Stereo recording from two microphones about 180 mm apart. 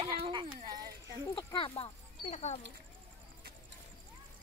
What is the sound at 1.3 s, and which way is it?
Speech, 30° left (ahead or behind).